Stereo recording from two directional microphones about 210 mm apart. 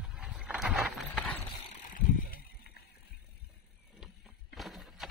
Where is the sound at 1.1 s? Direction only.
5° left (ahead or behind).